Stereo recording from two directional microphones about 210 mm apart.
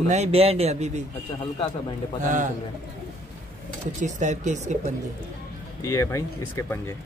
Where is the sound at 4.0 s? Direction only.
35° right (ahead or behind).